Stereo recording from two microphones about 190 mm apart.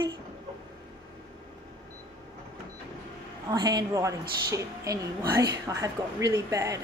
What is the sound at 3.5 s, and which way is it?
A woman's voice, 20° right (ahead or behind).